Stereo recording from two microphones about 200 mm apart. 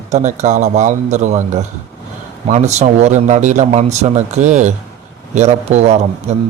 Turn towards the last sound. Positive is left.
turn(degrees=-35)  # may be behind; listen again after turning